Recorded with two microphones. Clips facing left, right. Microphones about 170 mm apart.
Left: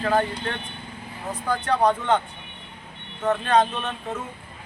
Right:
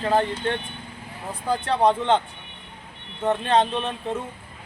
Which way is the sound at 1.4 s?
25° right (ahead or behind).